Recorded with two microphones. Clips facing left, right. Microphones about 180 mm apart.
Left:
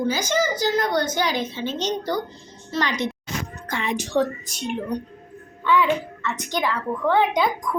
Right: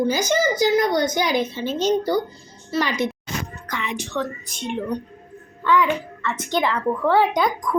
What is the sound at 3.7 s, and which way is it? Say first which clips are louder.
Speech: left 4 dB; 35° left (ahead or behind).